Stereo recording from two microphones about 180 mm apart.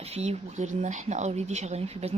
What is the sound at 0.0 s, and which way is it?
Speech, 35° right (ahead or behind).